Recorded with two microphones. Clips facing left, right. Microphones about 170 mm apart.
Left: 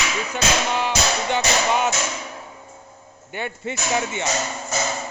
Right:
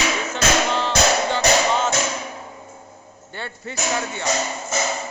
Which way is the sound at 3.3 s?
20° left (ahead or behind).